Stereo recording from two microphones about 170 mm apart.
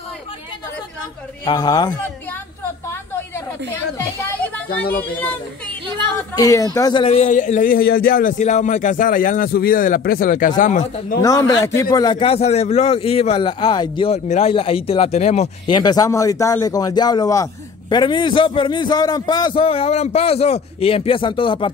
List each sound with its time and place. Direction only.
1.4 s a man's voice: 25° left (ahead or behind)
6.1 s speech: 20° left (ahead or behind); by 11.1 s 45° left (ahead or behind)
11.2 s a man's voice: 20° left (ahead or behind)
14.2 s speech: 45° left (ahead or behind)
14.5 s speech: 35° left (ahead or behind)
15.7 s a man's voice: 25° left (ahead or behind)